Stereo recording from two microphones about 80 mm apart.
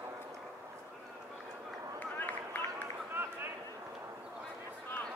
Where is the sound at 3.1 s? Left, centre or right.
Right.